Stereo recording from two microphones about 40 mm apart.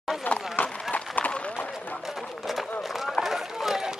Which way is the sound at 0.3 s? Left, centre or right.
Left.